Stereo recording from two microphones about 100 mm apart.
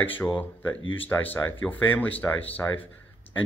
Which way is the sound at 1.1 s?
20° left (ahead or behind).